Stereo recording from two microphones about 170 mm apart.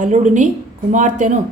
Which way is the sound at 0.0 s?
45° right (ahead or behind).